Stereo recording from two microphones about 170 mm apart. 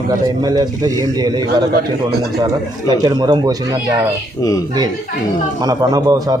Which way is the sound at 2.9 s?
25° right (ahead or behind).